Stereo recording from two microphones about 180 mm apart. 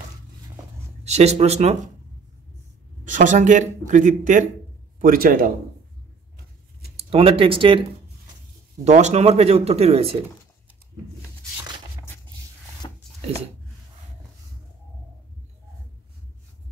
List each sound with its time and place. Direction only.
1.0 s speech: 35° right (ahead or behind)
3.1 s a man's voice: 45° right (ahead or behind)
7.0 s speech: 30° right (ahead or behind)
8.8 s speech: 40° right (ahead or behind)
12.8 s rub: 25° left (ahead or behind)